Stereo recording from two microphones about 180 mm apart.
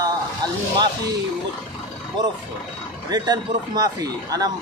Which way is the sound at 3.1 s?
20° right (ahead or behind).